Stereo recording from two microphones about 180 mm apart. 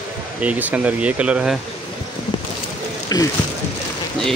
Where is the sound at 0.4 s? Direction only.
10° right (ahead or behind).